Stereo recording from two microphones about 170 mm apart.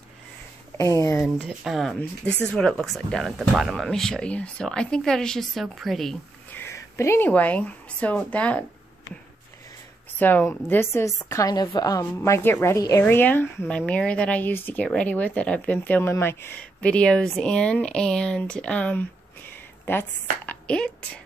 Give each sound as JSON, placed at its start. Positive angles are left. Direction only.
{"t": 0.7, "sound": "speech", "side_deg": 20}
{"t": 1.1, "sound": "speech", "side_deg": -5}
{"t": 6.6, "sound": "a woman's voice", "side_deg": 15}
{"t": 10.1, "sound": "a woman's voice", "side_deg": 10}